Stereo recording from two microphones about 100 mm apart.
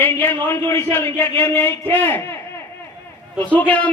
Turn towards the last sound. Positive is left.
turn(degrees=15)  # may be behind; listen again after turning